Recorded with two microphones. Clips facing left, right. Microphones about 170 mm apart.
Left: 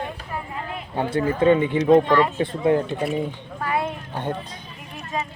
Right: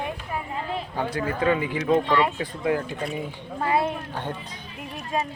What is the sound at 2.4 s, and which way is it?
Speech, 25° left (ahead or behind).